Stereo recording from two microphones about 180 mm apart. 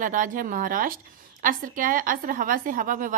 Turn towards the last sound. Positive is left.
turn(degrees=-50)  # may be behind; listen again after turning